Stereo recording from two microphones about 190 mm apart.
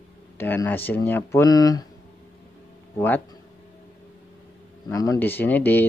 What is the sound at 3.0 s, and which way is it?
Speech, 10° left (ahead or behind).